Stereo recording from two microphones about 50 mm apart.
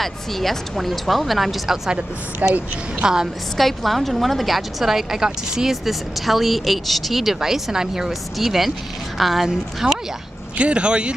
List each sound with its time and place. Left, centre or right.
0.0 s a woman's voice: centre
2.4 s a woman's voice: right
3.0 s speech: centre
3.5 s a woman's voice: centre
10.6 s speech: right